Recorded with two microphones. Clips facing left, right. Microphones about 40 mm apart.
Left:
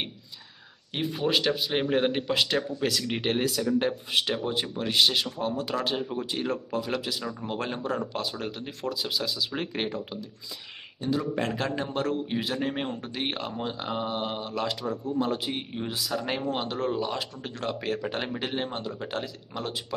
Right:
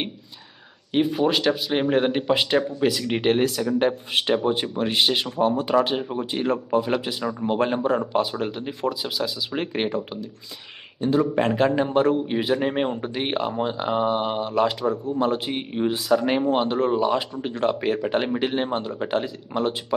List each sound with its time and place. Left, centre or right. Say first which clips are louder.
0.9 s speech: right 6 dB; centre
2.3 s speech: right 5 dB; centre
9.6 s speech: right 6 dB; right
14.9 s speech: right 5 dB; right